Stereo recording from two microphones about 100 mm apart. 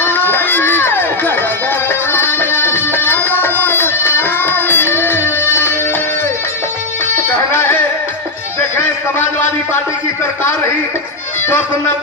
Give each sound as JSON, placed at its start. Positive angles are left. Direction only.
{"t": 0.0, "sound": "music", "side_deg": 20}
{"t": 7.5, "sound": "music", "side_deg": 20}